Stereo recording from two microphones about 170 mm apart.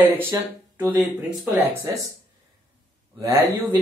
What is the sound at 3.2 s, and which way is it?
Speech, 20° right (ahead or behind).